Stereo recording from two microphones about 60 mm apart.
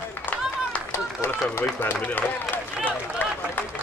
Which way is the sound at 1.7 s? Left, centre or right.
Left.